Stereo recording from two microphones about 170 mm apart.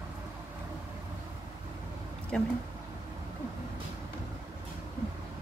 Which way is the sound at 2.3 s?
5° left (ahead or behind).